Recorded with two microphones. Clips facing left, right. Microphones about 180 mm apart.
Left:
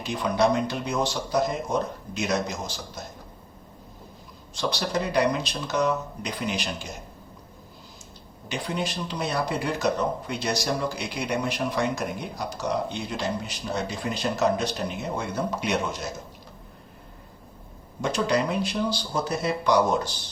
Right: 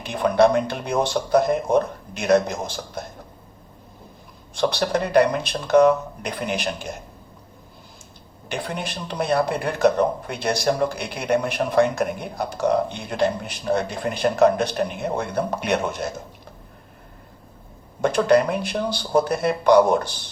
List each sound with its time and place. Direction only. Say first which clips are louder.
0.0 s speech: right 6 dB; 55° right (ahead or behind)
4.5 s speech: right 5 dB; 55° right (ahead or behind)
8.4 s speech: right 1 dB; 55° right (ahead or behind)
18.0 s speech: right 7 dB; 55° right (ahead or behind)